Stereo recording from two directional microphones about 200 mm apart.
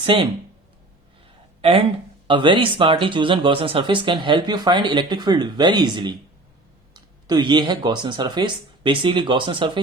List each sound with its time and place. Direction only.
0.0 s speech: 25° right (ahead or behind)
2.2 s speech: 25° right (ahead or behind)